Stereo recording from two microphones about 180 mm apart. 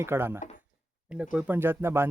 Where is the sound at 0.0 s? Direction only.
15° right (ahead or behind).